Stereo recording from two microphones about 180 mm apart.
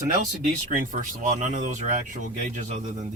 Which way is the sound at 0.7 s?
45° right (ahead or behind).